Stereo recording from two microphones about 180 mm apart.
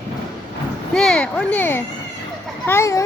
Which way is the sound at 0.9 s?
5° left (ahead or behind).